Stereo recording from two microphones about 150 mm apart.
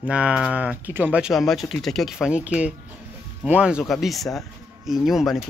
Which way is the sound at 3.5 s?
5° right (ahead or behind).